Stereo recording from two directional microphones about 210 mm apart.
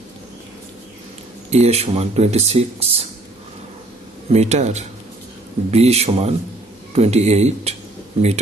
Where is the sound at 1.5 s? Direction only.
30° right (ahead or behind).